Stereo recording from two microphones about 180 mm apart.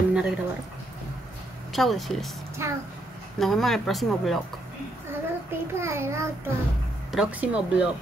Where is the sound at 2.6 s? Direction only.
15° right (ahead or behind).